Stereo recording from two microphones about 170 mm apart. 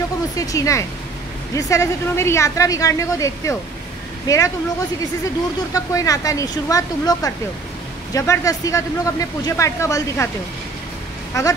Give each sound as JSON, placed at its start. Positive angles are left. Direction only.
{"t": 0.4, "sound": "speech", "side_deg": 20}
{"t": 5.7, "sound": "speech", "side_deg": 20}